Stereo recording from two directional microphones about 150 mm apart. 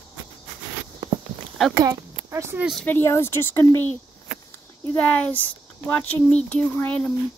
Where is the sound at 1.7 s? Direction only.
25° right (ahead or behind).